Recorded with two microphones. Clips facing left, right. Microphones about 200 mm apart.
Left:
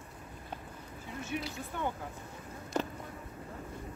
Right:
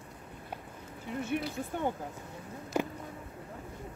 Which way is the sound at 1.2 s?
55° right (ahead or behind).